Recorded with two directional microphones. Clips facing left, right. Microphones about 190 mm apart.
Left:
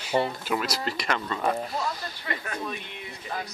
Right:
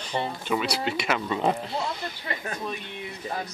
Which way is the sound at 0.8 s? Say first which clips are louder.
Right 2 dB; 5° right (ahead or behind).